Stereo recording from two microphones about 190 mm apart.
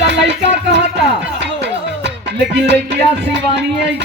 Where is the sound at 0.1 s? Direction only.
70° right (ahead or behind).